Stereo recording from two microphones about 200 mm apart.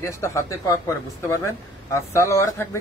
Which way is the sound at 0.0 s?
15° left (ahead or behind).